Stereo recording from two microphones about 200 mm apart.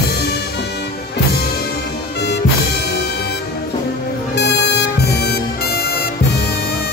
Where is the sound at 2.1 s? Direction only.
55° left (ahead or behind).